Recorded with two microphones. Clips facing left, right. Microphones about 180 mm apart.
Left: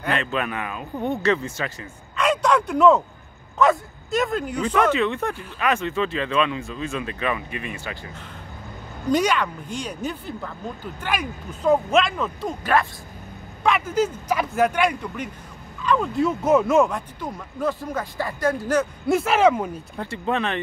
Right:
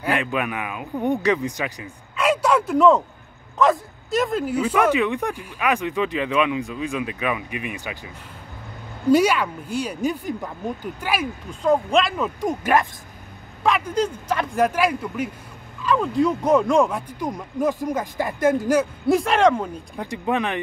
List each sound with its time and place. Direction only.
0.0 s speech: 10° right (ahead or behind)
9.1 s speech: 10° right (ahead or behind)
12.4 s speech: 15° right (ahead or behind)
13.7 s speech: centre (ahead or behind)
17.2 s speech: 15° right (ahead or behind)
19.0 s speech: centre (ahead or behind)
20.0 s speech: 15° right (ahead or behind)